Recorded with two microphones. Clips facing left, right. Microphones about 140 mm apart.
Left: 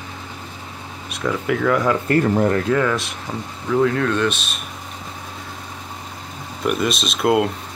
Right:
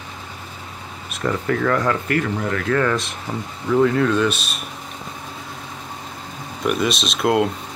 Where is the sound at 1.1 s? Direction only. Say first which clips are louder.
Even; centre (ahead or behind).